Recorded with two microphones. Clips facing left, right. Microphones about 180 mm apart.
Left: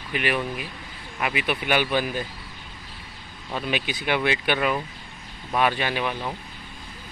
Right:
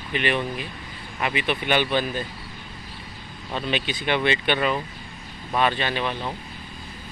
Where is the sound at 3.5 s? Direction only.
10° left (ahead or behind).